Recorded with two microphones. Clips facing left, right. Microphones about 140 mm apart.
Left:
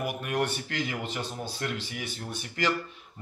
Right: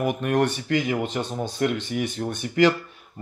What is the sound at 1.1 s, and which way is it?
Speech, 50° right (ahead or behind).